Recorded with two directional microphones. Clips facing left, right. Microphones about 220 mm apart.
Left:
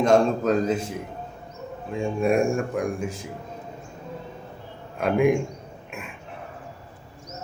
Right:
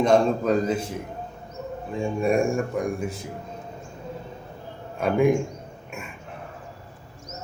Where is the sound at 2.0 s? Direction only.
Centre (ahead or behind).